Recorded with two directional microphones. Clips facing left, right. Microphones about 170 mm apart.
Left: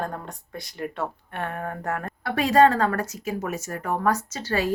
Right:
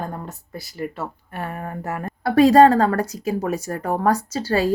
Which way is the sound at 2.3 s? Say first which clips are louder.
Right 6 dB; 35° right (ahead or behind).